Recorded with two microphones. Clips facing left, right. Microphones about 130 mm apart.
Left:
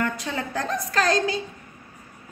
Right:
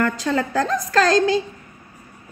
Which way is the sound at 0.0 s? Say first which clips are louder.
Right 7 dB; 90° right.